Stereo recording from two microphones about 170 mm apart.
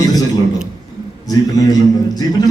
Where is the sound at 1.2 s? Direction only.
20° left (ahead or behind).